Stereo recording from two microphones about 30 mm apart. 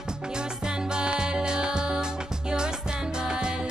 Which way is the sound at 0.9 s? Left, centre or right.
Right.